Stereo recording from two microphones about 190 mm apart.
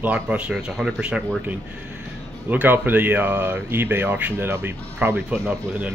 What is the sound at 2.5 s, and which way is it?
Speech, 10° right (ahead or behind).